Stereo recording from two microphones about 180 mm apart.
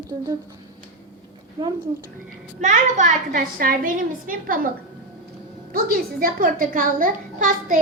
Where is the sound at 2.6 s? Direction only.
40° right (ahead or behind).